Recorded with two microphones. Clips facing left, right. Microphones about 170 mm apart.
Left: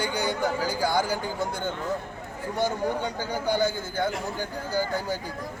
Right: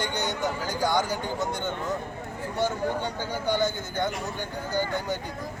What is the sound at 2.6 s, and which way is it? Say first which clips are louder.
Speech: left 1 dB; 10° left (ahead or behind).